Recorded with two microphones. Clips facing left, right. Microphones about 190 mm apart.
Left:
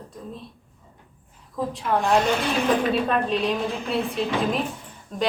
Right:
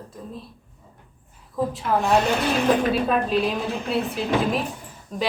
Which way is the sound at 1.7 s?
5° right (ahead or behind).